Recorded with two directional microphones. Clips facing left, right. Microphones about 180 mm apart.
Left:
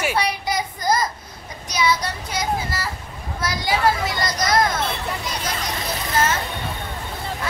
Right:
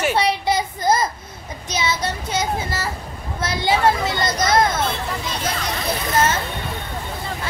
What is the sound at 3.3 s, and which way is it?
Vehicle, 25° right (ahead or behind).